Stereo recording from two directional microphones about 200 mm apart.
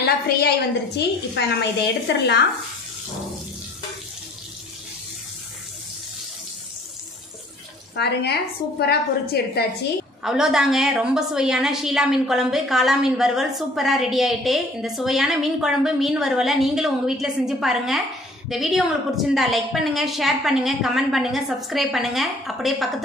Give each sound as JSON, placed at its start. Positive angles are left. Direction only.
{"t": 0.0, "sound": "a woman's voice", "side_deg": 55}
{"t": 7.9, "sound": "a woman's voice", "side_deg": 55}
{"t": 10.2, "sound": "a woman's voice", "side_deg": 0}